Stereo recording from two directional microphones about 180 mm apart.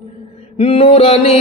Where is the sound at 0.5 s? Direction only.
35° left (ahead or behind).